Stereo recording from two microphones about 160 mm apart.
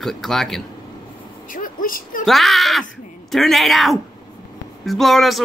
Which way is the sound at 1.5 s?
60° left (ahead or behind).